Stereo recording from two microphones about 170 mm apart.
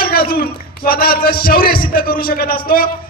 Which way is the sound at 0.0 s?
60° left (ahead or behind).